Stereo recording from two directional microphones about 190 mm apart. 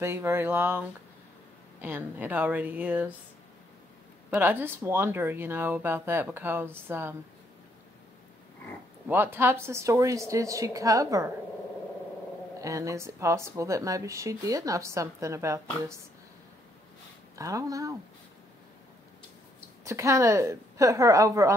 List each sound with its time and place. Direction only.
0.0 s speech: 10° right (ahead or behind)
4.3 s speech: 10° right (ahead or behind)
9.0 s speech: 10° right (ahead or behind)
12.5 s speech: 15° right (ahead or behind)
17.4 s speech: 15° right (ahead or behind)
19.8 s speech: 15° right (ahead or behind)